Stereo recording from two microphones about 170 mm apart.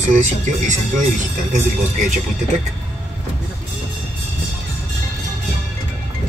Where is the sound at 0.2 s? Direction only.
45° right (ahead or behind).